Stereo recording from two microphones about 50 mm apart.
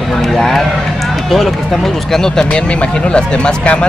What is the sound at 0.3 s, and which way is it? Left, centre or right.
Speech, centre.